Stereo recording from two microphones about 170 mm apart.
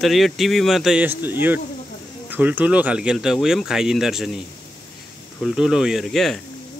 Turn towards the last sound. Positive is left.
turn(degrees=0)  # may be behind; listen again after turning